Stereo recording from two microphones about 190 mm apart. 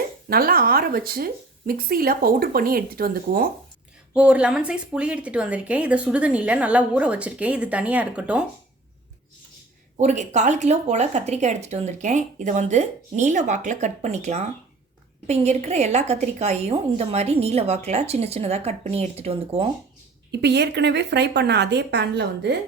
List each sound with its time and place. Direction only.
0.3 s a woman's voice: 50° right (ahead or behind)
4.1 s speech: 5° right (ahead or behind)
10.0 s speech: 40° right (ahead or behind)
20.3 s speech: 65° right (ahead or behind)